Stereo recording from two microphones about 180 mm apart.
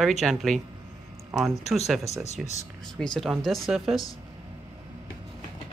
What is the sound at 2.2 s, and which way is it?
Speech, 40° left (ahead or behind).